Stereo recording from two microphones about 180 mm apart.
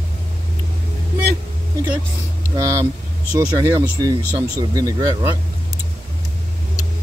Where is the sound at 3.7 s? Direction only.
20° right (ahead or behind).